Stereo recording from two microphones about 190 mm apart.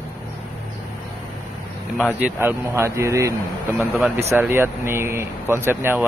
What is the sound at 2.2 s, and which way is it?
Speech, 10° right (ahead or behind).